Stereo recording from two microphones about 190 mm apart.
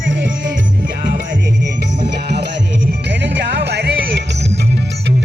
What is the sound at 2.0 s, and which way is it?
Music, 65° right (ahead or behind).